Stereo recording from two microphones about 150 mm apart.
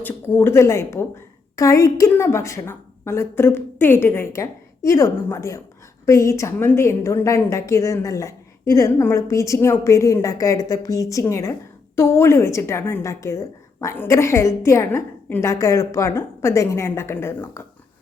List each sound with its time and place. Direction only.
0.0 s a woman's voice: 15° left (ahead or behind)